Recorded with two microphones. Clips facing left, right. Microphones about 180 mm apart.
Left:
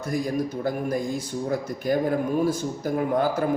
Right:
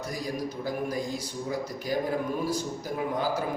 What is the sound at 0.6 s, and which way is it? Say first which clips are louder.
Speech: left 5 dB; 50° left (ahead or behind).